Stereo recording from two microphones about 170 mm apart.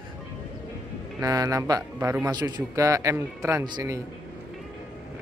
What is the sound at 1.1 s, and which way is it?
Speech, 20° right (ahead or behind).